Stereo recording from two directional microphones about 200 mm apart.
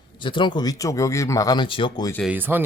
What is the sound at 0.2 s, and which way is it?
Speech, 25° left (ahead or behind).